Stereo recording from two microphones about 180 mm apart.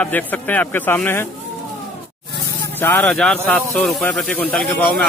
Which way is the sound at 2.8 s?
10° left (ahead or behind).